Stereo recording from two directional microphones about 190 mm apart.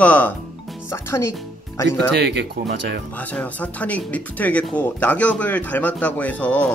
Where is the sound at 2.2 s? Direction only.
60° right (ahead or behind).